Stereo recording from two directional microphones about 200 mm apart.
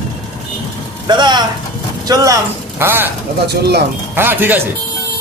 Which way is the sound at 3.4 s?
55° right (ahead or behind).